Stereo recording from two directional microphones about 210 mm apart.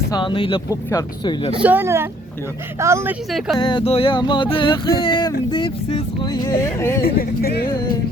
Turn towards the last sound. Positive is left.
turn(degrees=45)  # may be behind; listen again after turning